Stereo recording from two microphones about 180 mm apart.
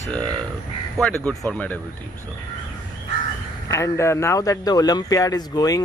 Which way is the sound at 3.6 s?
15° left (ahead or behind).